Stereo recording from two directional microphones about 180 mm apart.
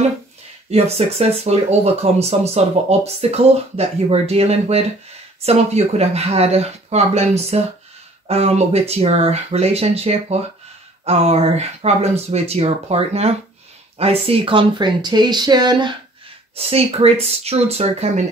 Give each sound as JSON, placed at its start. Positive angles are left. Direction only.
{"t": 0.7, "sound": "speech", "side_deg": -35}
{"t": 16.5, "sound": "speech", "side_deg": -35}